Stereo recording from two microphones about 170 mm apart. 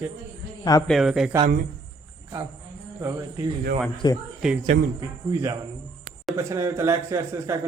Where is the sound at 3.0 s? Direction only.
20° right (ahead or behind).